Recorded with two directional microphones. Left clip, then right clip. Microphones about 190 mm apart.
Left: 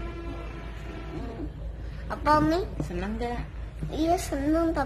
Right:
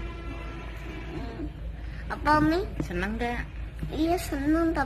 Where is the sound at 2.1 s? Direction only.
25° left (ahead or behind).